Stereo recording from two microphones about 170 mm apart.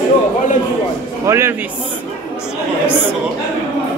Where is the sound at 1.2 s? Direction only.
15° right (ahead or behind).